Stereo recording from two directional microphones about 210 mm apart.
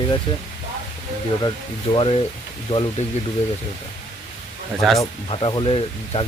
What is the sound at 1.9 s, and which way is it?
Speech, 25° left (ahead or behind).